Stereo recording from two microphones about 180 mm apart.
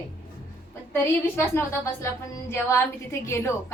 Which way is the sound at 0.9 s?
15° left (ahead or behind).